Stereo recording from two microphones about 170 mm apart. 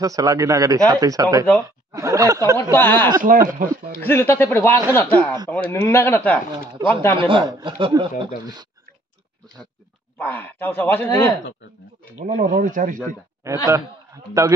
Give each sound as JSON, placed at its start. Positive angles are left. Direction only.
{"t": 0.0, "sound": "speech", "side_deg": -20}
{"t": 2.7, "sound": "speech", "side_deg": 10}
{"t": 3.2, "sound": "speech", "side_deg": -55}
{"t": 4.0, "sound": "speech", "side_deg": 15}
{"t": 7.2, "sound": "speech", "side_deg": -30}
{"t": 10.1, "sound": "speech", "side_deg": 10}
{"t": 12.2, "sound": "speech", "side_deg": -50}
{"t": 13.4, "sound": "a man's voice", "side_deg": -20}